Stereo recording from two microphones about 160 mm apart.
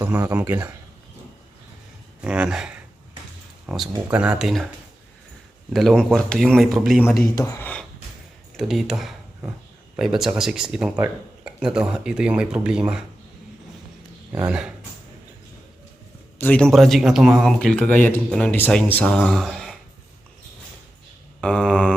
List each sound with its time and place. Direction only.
0.3 s speech: 10° right (ahead or behind)
2.2 s speech: 5° right (ahead or behind)
5.7 s speech: centre (ahead or behind)
7.3 s speech: 20° left (ahead or behind)
8.5 s speech: centre (ahead or behind)
14.3 s speech: 5° right (ahead or behind)
16.4 s speech: 10° left (ahead or behind)
17.8 s speech: 50° right (ahead or behind)
18.3 s speech: 5° left (ahead or behind)
21.4 s mantra: 5° left (ahead or behind)